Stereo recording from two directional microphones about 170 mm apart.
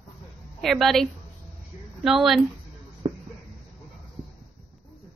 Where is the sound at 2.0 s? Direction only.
Centre (ahead or behind).